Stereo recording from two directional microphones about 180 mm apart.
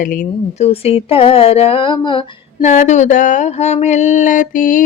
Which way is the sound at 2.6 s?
40° left (ahead or behind).